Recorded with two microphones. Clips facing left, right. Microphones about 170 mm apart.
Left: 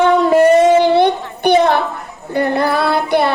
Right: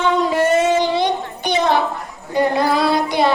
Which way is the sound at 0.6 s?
55° left (ahead or behind).